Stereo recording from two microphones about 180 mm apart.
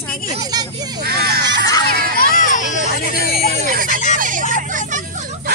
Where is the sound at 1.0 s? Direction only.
60° right (ahead or behind).